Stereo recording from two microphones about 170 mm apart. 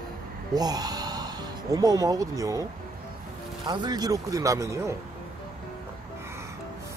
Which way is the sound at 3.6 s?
25° right (ahead or behind).